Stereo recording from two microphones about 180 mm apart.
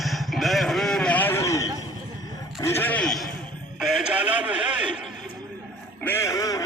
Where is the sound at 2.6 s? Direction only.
10° left (ahead or behind); by 5.1 s 5° right (ahead or behind).